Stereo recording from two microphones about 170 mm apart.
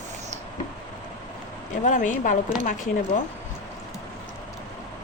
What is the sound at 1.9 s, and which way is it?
Speech, 50° left (ahead or behind).